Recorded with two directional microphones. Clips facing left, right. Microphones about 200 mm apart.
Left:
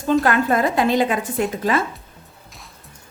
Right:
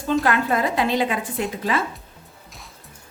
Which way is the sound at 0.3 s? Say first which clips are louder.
Left 3 dB; 45° left (ahead or behind).